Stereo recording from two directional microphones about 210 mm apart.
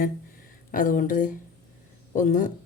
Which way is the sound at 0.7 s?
40° left (ahead or behind).